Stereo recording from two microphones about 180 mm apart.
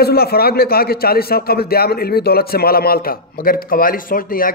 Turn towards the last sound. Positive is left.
turn(degrees=50)  # may be behind; listen again after turning